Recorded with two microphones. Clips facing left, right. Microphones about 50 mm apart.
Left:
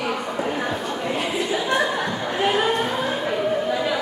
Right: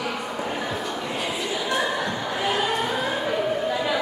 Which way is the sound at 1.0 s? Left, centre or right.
Left.